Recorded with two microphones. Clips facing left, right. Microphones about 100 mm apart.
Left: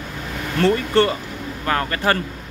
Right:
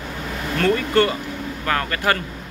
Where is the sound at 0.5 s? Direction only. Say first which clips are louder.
Left 1 dB; 30° left (ahead or behind).